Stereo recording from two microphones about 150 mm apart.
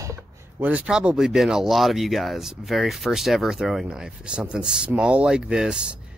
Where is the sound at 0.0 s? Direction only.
15° right (ahead or behind).